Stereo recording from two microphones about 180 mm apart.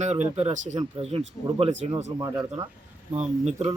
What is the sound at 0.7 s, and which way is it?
Speech, 30° right (ahead or behind).